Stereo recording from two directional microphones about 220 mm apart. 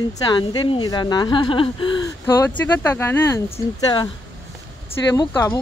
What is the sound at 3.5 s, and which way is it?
A woman's voice, 20° left (ahead or behind).